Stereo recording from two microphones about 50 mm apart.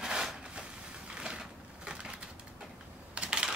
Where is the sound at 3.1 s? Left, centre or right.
Centre.